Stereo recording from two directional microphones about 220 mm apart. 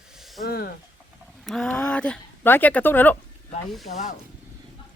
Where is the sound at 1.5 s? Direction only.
Centre (ahead or behind).